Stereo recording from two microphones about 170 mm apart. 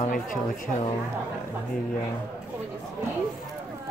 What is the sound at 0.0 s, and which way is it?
Speech, 50° left (ahead or behind).